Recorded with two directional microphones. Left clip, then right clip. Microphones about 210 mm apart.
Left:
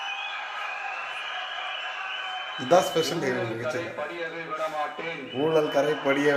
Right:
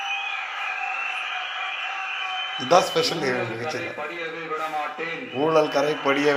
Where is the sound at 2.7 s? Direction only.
20° left (ahead or behind).